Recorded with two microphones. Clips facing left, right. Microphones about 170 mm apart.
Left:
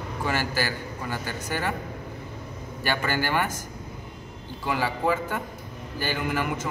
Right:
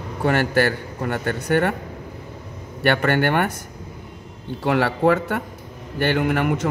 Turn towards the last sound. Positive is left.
turn(degrees=-65)  # may be behind; listen again after turning